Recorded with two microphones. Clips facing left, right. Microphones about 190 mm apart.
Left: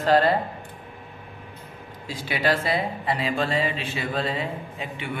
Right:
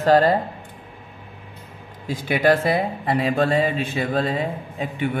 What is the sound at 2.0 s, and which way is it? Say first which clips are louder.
Speech: right 6 dB; 50° right (ahead or behind).